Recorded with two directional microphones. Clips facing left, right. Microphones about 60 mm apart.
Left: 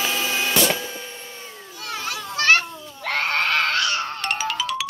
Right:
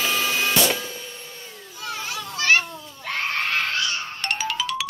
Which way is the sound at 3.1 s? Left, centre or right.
Left.